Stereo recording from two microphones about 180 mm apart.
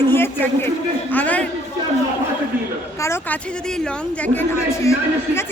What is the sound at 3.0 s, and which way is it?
A woman's voice, 10° left (ahead or behind).